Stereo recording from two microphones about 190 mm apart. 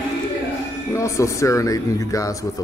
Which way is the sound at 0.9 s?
15° left (ahead or behind).